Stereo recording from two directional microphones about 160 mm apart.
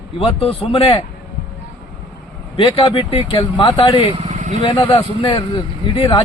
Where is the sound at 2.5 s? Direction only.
35° left (ahead or behind).